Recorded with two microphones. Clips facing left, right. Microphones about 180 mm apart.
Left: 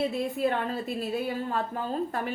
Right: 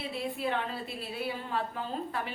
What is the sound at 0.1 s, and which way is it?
A woman's voice, 45° left (ahead or behind).